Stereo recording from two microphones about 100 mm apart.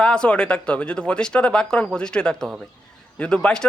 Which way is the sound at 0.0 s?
10° left (ahead or behind).